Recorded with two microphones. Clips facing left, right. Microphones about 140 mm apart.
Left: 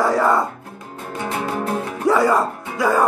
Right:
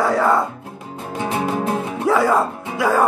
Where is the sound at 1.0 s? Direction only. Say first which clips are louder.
Right 3 dB; 15° right (ahead or behind).